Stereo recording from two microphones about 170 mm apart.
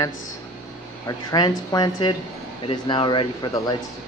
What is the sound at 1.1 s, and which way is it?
Speech, 25° left (ahead or behind).